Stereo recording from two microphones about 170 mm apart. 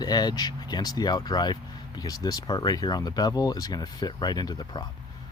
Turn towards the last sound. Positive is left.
turn(degrees=25)  # may be behind; listen again after turning